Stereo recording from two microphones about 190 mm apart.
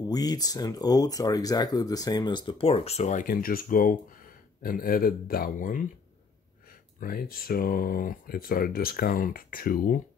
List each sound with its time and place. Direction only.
0.0 s speech: 20° left (ahead or behind); by 5.8 s 50° left (ahead or behind)
7.0 s speech: 50° left (ahead or behind)